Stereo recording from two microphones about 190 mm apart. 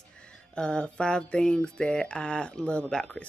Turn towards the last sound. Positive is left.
turn(degrees=5)  # may be behind; listen again after turning